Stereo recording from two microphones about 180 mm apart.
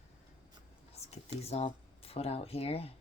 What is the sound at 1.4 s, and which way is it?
Speech, 35° left (ahead or behind).